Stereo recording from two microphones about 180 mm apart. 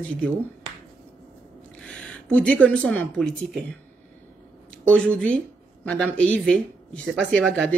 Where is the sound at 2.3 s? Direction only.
5° left (ahead or behind).